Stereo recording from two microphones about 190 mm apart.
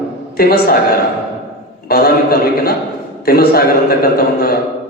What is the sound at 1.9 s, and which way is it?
A man's voice, 55° left (ahead or behind).